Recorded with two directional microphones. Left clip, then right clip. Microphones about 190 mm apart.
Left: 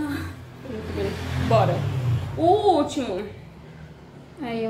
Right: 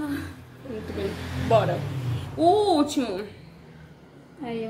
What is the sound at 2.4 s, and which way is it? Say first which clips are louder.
Speech: left 1 dB; 55° right (ahead or behind).